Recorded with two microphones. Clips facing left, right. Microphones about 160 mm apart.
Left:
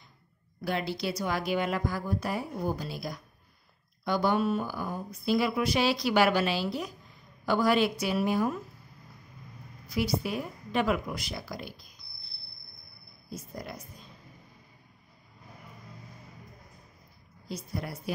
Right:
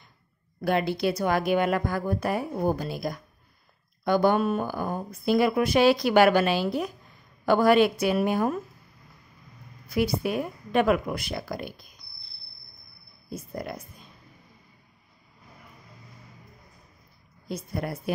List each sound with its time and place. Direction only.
0.6 s speech: 55° right (ahead or behind)
9.8 s speech: 55° right (ahead or behind)
13.3 s speech: 55° right (ahead or behind)
17.5 s speech: 55° right (ahead or behind)